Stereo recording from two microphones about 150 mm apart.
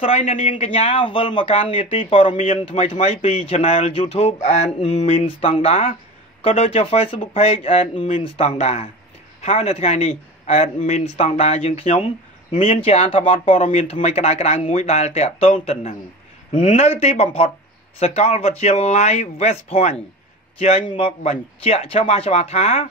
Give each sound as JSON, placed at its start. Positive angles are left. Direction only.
{"t": 0.0, "sound": "a man's voice", "side_deg": 40}
{"t": 13.6, "sound": "a man's voice", "side_deg": 50}